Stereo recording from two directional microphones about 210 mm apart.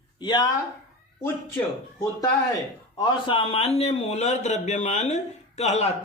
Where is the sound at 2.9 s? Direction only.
25° left (ahead or behind).